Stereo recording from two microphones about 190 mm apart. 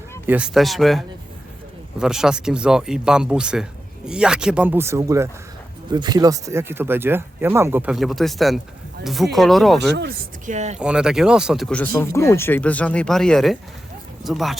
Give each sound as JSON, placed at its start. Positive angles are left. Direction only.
{"t": 0.3, "sound": "speech", "side_deg": -5}
{"t": 9.9, "sound": "speech", "side_deg": -60}
{"t": 10.4, "sound": "speech", "side_deg": -40}
{"t": 10.8, "sound": "speech", "side_deg": -5}